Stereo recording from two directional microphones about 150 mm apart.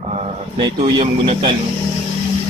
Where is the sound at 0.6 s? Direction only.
35° right (ahead or behind).